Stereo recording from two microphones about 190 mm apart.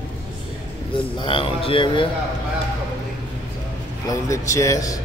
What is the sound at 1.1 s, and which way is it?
Speech, 25° left (ahead or behind).